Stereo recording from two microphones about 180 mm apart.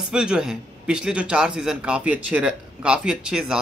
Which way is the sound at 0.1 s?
5° right (ahead or behind).